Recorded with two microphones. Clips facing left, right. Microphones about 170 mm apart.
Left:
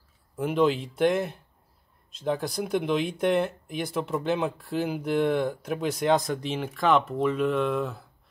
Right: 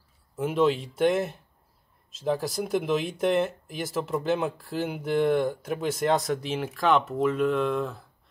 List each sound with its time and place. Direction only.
0.4 s speech: centre (ahead or behind)